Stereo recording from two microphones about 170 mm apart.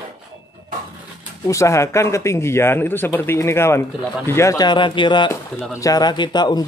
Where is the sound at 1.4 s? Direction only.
20° left (ahead or behind).